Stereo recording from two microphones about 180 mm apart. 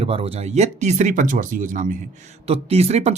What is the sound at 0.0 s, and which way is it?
Speech, 35° right (ahead or behind).